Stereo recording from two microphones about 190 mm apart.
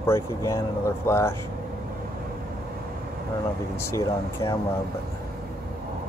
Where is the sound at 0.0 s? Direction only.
15° left (ahead or behind).